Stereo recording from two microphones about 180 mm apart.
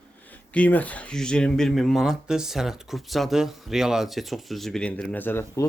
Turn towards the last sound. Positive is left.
turn(degrees=15)  # may be behind; listen again after turning